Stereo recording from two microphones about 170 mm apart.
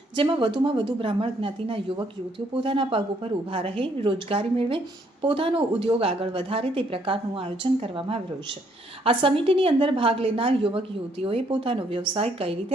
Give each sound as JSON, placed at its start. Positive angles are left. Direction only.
{"t": 0.2, "sound": "a woman's voice", "side_deg": -30}